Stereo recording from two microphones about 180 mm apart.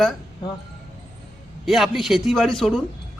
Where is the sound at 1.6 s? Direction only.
Centre (ahead or behind).